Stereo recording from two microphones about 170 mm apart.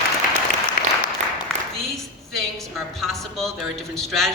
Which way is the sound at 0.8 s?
55° left (ahead or behind).